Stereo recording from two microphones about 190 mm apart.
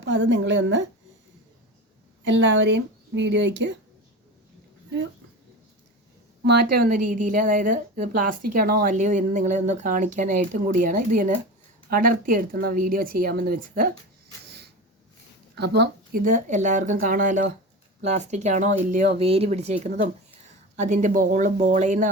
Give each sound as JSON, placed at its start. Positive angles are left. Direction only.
{"t": 0.0, "sound": "speech", "side_deg": -70}
{"t": 2.2, "sound": "speech", "side_deg": -75}
{"t": 6.4, "sound": "a woman's voice", "side_deg": -55}
{"t": 15.5, "sound": "a woman's voice", "side_deg": -60}